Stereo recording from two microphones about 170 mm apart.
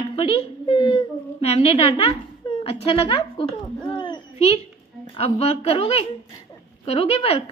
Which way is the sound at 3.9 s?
30° left (ahead or behind).